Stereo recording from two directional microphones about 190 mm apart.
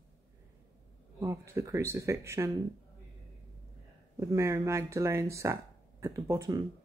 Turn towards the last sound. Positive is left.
turn(degrees=-15)  # may be behind; listen again after turning